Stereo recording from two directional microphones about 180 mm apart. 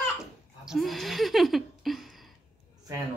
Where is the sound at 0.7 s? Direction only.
Centre (ahead or behind).